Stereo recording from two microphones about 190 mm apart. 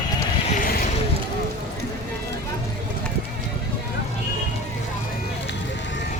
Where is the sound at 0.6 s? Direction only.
50° left (ahead or behind).